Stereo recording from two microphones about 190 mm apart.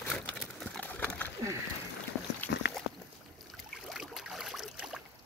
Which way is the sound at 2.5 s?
65° left (ahead or behind).